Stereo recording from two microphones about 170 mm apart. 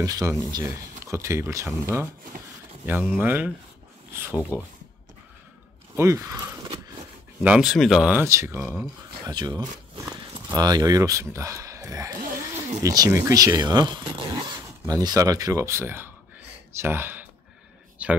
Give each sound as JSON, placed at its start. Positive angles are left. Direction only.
{"t": 0.0, "sound": "speech", "side_deg": -20}
{"t": 5.9, "sound": "speech", "side_deg": -15}
{"t": 7.4, "sound": "speech", "side_deg": -5}
{"t": 12.2, "sound": "a sound", "side_deg": -50}
{"t": 12.8, "sound": "speech", "side_deg": -20}